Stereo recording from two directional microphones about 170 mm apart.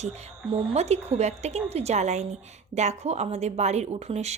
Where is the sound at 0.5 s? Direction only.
40° right (ahead or behind).